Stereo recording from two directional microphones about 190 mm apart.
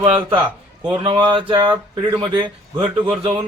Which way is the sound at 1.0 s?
25° right (ahead or behind).